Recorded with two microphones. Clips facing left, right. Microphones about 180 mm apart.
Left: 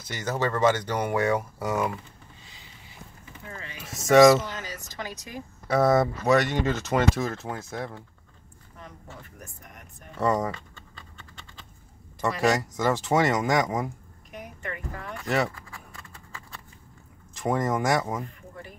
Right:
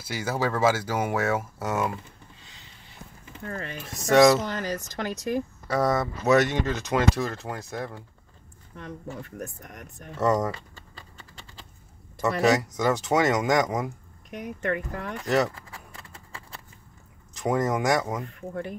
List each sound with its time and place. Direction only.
0.0 s speech: 10° right (ahead or behind)
3.4 s speech: 55° right (ahead or behind)
4.1 s speech: 5° left (ahead or behind)
4.5 s speech: 60° right (ahead or behind)
5.7 s speech: 5° left (ahead or behind)
10.1 s speech: centre (ahead or behind)
12.2 s speech: centre (ahead or behind)
14.4 s speech: 65° right (ahead or behind)
15.2 s speech: centre (ahead or behind)
17.4 s speech: centre (ahead or behind)
18.2 s speech: 60° right (ahead or behind)